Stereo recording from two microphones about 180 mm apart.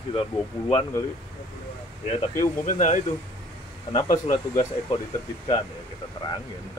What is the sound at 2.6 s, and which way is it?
Speech, 40° left (ahead or behind).